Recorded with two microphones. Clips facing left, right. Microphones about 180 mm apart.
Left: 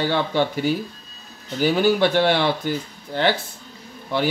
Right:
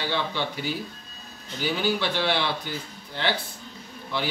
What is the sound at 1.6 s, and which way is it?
Speech, 50° left (ahead or behind).